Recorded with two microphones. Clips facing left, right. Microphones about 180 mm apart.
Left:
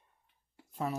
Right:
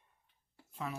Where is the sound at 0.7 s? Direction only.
40° left (ahead or behind).